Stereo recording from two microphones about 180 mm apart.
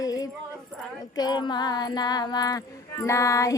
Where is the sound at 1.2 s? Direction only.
25° left (ahead or behind).